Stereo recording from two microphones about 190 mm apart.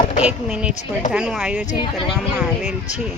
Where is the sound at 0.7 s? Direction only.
40° left (ahead or behind).